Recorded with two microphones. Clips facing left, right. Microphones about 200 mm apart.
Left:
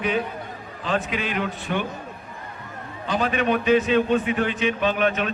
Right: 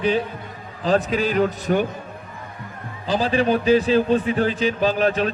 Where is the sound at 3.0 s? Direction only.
30° right (ahead or behind).